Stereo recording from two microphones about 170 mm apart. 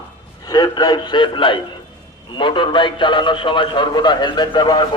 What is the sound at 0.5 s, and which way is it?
A man's voice, 25° left (ahead or behind).